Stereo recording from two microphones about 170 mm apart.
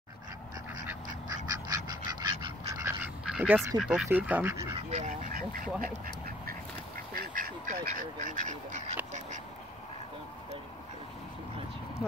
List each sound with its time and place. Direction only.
1.3 s duck: 20° right (ahead or behind)
3.3 s duck: 5° right (ahead or behind)
3.7 s speech: centre (ahead or behind)
4.7 s duck: 40° right (ahead or behind)
5.3 s duck: 55° right (ahead or behind)